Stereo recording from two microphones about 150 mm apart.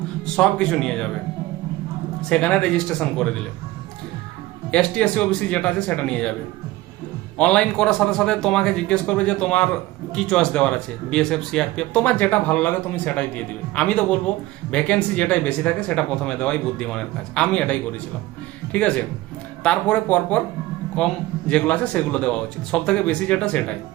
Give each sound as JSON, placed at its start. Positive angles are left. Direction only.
{"t": 0.3, "sound": "speech", "side_deg": 5}
{"t": 2.3, "sound": "speech", "side_deg": 5}
{"t": 4.7, "sound": "speech", "side_deg": 5}
{"t": 7.3, "sound": "speech", "side_deg": 10}